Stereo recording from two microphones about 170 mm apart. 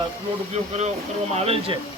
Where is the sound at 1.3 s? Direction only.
35° right (ahead or behind).